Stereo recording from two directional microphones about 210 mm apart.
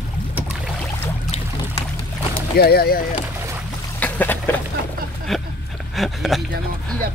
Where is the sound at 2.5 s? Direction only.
45° left (ahead or behind).